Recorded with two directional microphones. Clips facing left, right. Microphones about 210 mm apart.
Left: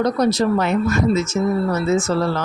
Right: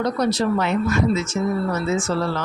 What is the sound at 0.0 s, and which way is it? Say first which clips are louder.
Speech: left 3 dB; 40° left (ahead or behind).